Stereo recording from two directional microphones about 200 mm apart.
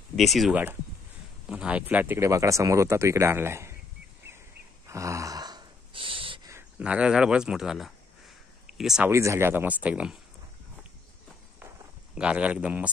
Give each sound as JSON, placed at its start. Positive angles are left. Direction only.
{"t": 0.1, "sound": "speech", "side_deg": 0}
{"t": 4.8, "sound": "wheeze", "side_deg": -15}
{"t": 6.5, "sound": "speech", "side_deg": -5}
{"t": 9.1, "sound": "speech", "side_deg": -15}
{"t": 12.2, "sound": "speech", "side_deg": -5}